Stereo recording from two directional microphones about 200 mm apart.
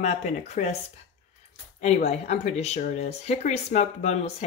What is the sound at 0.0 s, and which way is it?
Speech, 35° left (ahead or behind).